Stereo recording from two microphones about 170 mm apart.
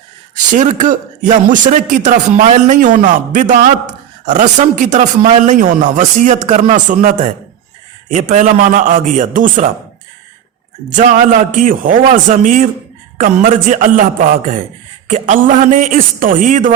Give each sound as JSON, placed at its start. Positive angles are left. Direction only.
{"t": 0.5, "sound": "a man's voice", "side_deg": -45}
{"t": 8.1, "sound": "a man's voice", "side_deg": -45}
{"t": 10.9, "sound": "a man's voice", "side_deg": -50}